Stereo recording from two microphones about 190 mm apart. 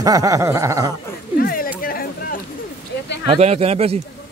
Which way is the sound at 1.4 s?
50° left (ahead or behind).